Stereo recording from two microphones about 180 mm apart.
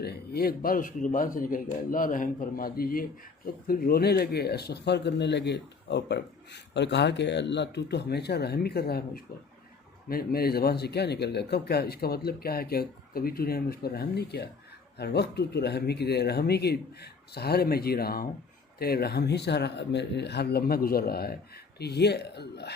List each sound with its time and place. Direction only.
0.0 s speech: 60° left (ahead or behind)